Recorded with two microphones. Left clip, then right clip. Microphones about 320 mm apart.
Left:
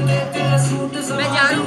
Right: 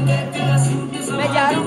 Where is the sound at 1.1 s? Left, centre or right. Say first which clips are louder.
Even; centre.